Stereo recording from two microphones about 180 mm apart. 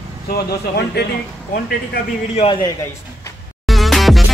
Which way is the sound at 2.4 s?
30° left (ahead or behind).